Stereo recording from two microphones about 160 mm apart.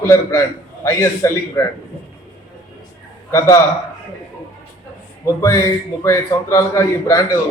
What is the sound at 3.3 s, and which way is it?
Speech, 20° left (ahead or behind).